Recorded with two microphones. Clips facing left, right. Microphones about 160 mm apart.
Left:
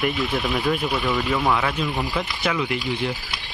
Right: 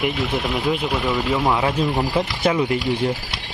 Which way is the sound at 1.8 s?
45° right (ahead or behind).